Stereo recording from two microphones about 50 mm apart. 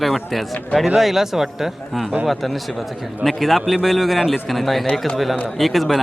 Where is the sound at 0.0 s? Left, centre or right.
Centre.